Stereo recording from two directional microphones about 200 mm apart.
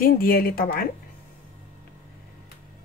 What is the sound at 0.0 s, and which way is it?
Speech, 45° left (ahead or behind).